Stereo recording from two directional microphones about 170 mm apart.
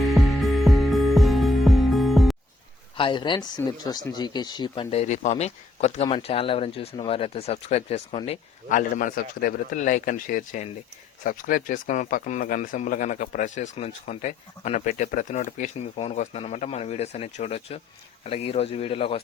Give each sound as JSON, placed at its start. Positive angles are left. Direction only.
{"t": 0.0, "sound": "music", "side_deg": 0}
{"t": 3.0, "sound": "speech", "side_deg": 30}
{"t": 9.0, "sound": "speech", "side_deg": 55}